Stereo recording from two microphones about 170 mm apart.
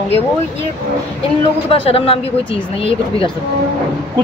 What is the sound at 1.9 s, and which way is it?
Speech, 35° left (ahead or behind).